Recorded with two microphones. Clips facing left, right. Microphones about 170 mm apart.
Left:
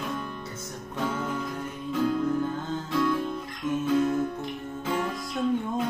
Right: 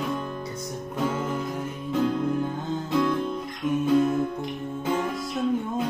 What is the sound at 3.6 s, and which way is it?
Music, 25° right (ahead or behind).